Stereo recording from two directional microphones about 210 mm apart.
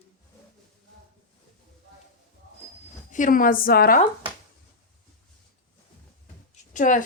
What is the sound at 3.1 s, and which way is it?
Speech, 40° left (ahead or behind).